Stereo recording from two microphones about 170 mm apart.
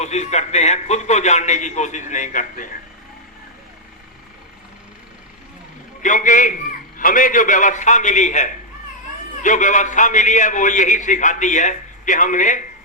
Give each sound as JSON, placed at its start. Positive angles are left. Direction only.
{"t": 0.0, "sound": "a man's voice", "side_deg": 40}
{"t": 6.0, "sound": "a man's voice", "side_deg": 50}